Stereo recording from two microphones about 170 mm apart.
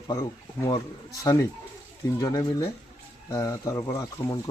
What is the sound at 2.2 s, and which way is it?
Speech, 20° left (ahead or behind).